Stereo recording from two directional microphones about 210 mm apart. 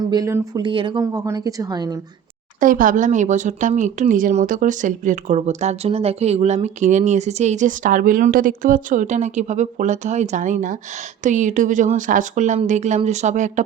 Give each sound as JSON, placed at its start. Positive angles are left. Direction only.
{"t": 0.0, "sound": "a woman's voice", "side_deg": -20}
{"t": 2.6, "sound": "speech", "side_deg": -40}